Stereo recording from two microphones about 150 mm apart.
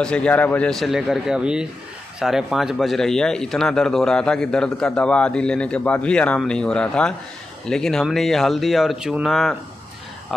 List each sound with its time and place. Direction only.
0.0 s speech: 5° left (ahead or behind)